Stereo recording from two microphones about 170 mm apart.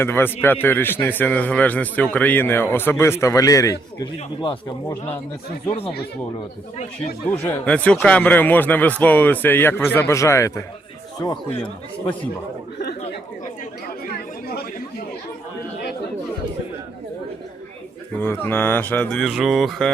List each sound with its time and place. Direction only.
0.0 s speech: 15° left (ahead or behind)
5.6 s speech: 35° left (ahead or behind)
7.3 s speech: 10° left (ahead or behind); by 12.3 s 30° left (ahead or behind)
12.8 s chatter: 70° left (ahead or behind)
14.4 s chatter: 70° left (ahead or behind)
18.2 s speech: 15° left (ahead or behind)
19.2 s mantra: centre (ahead or behind)